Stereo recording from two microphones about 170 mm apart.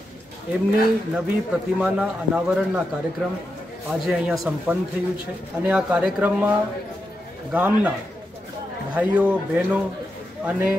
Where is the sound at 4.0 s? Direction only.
5° right (ahead or behind).